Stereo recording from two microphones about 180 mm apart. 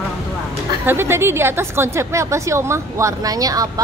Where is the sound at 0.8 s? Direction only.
15° right (ahead or behind).